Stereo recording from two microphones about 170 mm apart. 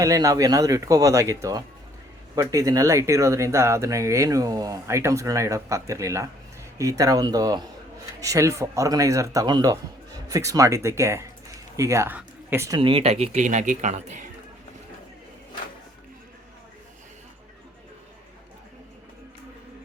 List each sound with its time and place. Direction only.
0.0 s a man's voice: 20° right (ahead or behind)
12.8 s speech: 35° right (ahead or behind)